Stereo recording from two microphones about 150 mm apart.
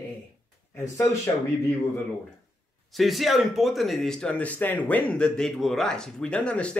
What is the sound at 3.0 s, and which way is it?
Speech, centre (ahead or behind).